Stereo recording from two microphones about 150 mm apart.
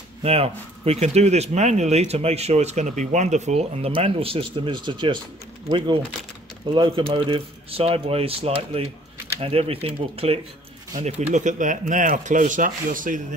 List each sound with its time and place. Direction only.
0.2 s speech: 40° right (ahead or behind)
11.0 s speech: 50° right (ahead or behind)